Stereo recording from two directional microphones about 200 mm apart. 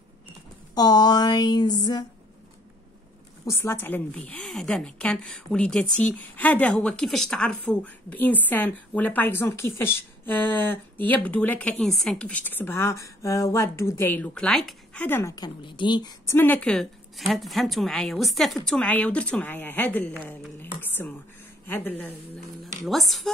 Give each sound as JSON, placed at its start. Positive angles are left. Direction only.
{"t": 0.7, "sound": "a sound", "side_deg": 20}
{"t": 3.4, "sound": "a woman's voice", "side_deg": 10}
{"t": 16.3, "sound": "a woman's voice", "side_deg": 10}